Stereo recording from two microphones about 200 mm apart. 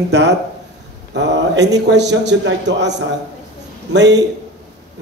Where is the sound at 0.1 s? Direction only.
60° right (ahead or behind).